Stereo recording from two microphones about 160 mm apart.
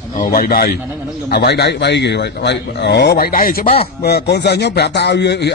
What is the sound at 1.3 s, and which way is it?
Speech, 90° left.